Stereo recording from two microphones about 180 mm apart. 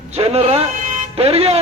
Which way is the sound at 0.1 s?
35° right (ahead or behind).